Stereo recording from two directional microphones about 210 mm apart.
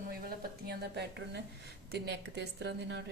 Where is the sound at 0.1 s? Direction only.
45° right (ahead or behind).